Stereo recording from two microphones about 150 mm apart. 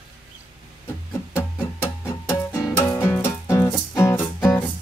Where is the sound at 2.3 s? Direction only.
20° left (ahead or behind).